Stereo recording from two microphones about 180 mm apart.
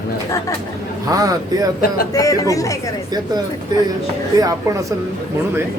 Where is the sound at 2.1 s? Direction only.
20° left (ahead or behind).